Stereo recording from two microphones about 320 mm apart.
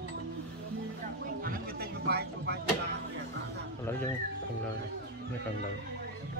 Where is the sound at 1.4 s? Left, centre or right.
Right.